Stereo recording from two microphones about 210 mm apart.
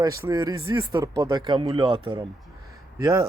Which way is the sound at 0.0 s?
15° right (ahead or behind).